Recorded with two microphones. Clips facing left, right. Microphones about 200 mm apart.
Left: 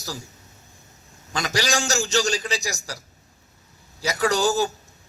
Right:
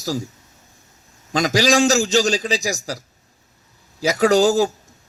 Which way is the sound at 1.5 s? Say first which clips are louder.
Right 8 dB; 90° right.